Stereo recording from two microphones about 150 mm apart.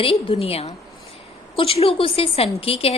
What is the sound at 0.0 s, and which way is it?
A woman's voice, 40° left (ahead or behind).